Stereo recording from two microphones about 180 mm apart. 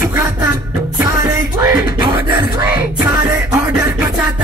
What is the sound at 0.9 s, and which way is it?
Music, 15° right (ahead or behind).